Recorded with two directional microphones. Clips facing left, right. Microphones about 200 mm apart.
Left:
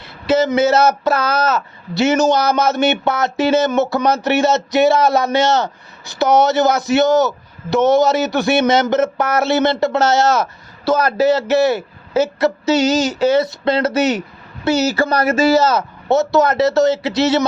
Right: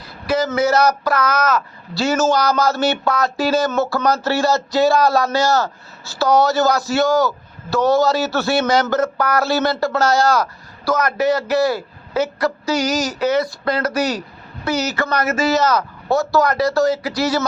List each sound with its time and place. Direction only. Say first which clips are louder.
0.0 s speech: left 4 dB; 25° left (ahead or behind)